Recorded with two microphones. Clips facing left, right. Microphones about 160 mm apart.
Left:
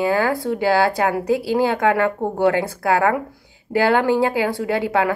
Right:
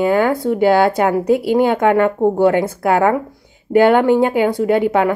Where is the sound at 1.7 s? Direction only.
20° right (ahead or behind).